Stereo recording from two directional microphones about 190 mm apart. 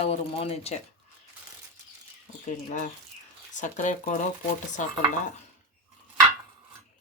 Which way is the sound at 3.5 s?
40° left (ahead or behind).